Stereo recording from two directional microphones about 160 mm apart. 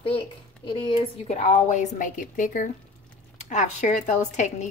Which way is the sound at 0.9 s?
40° left (ahead or behind).